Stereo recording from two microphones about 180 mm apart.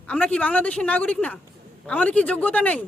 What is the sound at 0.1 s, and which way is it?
A woman's voice, 5° left (ahead or behind).